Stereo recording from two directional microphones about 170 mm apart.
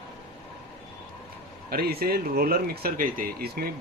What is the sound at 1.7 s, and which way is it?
Speech, 65° right (ahead or behind).